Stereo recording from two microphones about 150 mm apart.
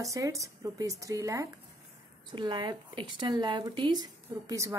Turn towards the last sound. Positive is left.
turn(degrees=-20)  # may be behind; listen again after turning